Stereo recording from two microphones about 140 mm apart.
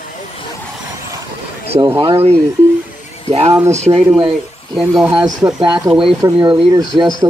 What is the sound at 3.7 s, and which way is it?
Speech, 50° right (ahead or behind).